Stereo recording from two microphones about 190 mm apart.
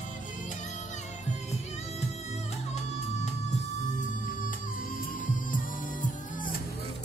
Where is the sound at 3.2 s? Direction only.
40° left (ahead or behind).